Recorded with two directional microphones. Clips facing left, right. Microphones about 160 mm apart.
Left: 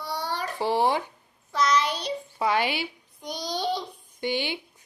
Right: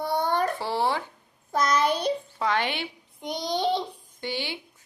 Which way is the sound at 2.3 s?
10° left (ahead or behind).